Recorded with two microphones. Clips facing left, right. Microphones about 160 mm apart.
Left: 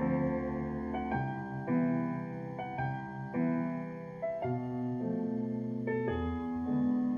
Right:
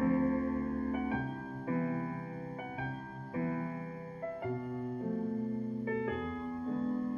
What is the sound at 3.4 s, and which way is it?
Music, 30° left (ahead or behind).